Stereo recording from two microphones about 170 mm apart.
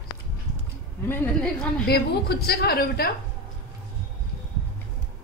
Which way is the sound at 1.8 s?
70° left (ahead or behind).